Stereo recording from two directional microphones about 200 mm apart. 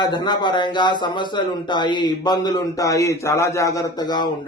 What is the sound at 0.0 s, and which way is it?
A man's voice, 20° left (ahead or behind).